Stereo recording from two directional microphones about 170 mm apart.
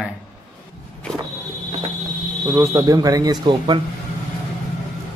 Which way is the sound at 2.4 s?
15° right (ahead or behind).